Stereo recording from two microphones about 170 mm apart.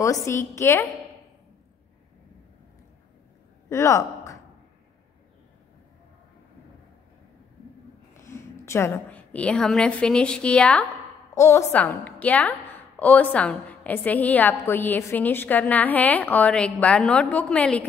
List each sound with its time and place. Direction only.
0.0 s a woman's voice: 20° left (ahead or behind)
3.6 s speech: 15° left (ahead or behind)
8.2 s a woman's voice: 15° left (ahead or behind)
11.3 s a woman's voice: 15° left (ahead or behind)